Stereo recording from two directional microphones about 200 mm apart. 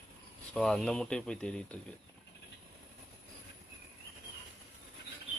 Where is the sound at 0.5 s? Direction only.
5° left (ahead or behind).